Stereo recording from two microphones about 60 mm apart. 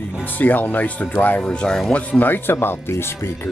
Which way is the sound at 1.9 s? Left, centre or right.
Left.